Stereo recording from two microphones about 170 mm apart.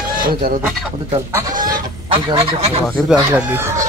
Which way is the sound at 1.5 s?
55° right (ahead or behind).